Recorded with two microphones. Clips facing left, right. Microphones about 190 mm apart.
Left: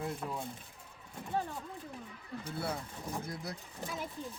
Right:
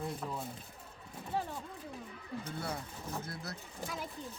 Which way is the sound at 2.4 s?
10° left (ahead or behind).